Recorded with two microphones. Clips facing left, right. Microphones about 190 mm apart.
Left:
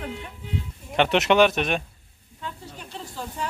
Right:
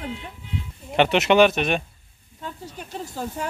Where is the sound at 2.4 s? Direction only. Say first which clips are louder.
Right 2 dB; 45° right (ahead or behind).